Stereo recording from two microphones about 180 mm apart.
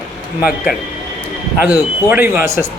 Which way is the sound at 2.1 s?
10° right (ahead or behind).